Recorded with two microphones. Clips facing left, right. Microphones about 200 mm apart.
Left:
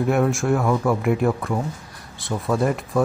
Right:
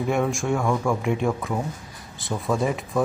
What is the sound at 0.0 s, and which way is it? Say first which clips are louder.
Speech: left 4 dB; centre (ahead or behind).